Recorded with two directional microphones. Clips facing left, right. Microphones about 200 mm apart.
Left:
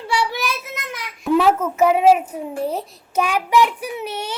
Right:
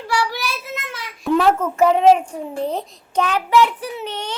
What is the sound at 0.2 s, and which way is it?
Child singing, 20° left (ahead or behind).